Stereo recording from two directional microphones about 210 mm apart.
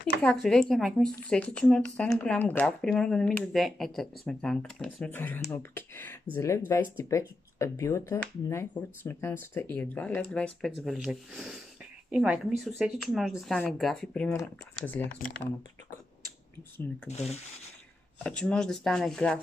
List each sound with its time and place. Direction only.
0.2 s speech: centre (ahead or behind)
17.1 s speech: 30° left (ahead or behind)
18.2 s speech: 5° left (ahead or behind)